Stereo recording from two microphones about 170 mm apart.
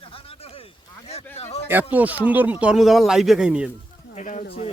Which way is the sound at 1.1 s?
40° left (ahead or behind).